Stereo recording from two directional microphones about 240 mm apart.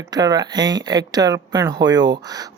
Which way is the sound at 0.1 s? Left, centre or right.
Centre.